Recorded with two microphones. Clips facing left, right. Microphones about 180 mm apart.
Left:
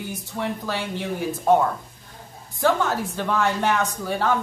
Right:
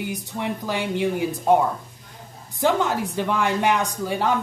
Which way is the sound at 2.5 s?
15° right (ahead or behind).